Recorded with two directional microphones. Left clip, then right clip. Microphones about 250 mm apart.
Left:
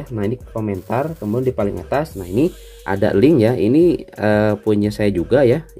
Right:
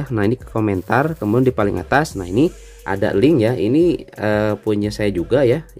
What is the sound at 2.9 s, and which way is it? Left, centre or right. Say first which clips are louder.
Speech: left 1 dB; centre.